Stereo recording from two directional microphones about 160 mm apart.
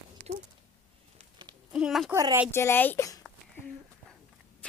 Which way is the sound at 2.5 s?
15° left (ahead or behind).